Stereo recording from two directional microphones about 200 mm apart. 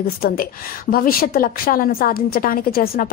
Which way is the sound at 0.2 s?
45° left (ahead or behind).